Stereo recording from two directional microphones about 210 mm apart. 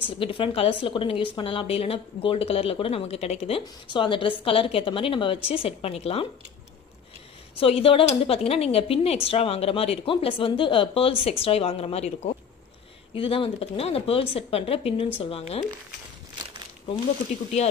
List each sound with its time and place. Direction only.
0.2 s a woman's voice: 25° left (ahead or behind)
7.6 s a woman's voice: 25° left (ahead or behind)